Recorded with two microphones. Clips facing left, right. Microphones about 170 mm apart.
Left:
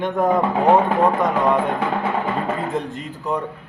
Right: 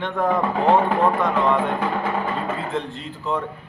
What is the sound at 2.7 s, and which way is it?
Speech, 40° left (ahead or behind).